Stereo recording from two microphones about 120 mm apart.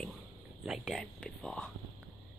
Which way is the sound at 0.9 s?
5° left (ahead or behind).